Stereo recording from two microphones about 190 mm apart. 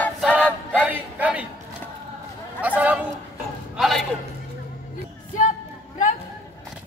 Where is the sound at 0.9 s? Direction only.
10° right (ahead or behind).